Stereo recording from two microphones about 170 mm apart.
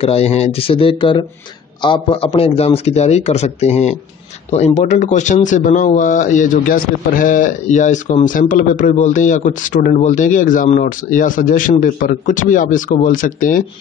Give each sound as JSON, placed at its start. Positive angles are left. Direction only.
{"t": 0.0, "sound": "a man's voice", "side_deg": 35}